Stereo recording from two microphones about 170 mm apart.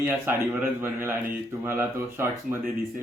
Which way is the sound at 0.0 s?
10° right (ahead or behind).